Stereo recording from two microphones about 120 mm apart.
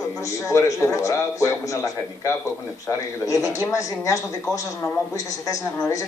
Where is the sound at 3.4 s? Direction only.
25° left (ahead or behind).